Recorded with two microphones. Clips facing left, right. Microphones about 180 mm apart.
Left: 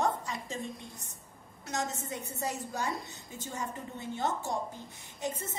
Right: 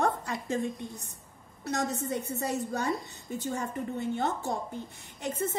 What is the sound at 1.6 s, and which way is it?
A woman's voice, 60° right (ahead or behind).